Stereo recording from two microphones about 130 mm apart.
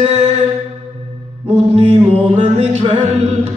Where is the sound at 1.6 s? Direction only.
55° right (ahead or behind).